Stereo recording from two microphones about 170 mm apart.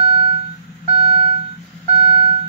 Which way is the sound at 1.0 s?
30° right (ahead or behind).